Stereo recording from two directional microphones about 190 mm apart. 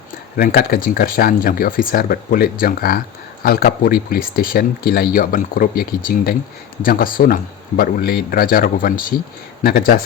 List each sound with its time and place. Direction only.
0.3 s speech: 50° left (ahead or behind)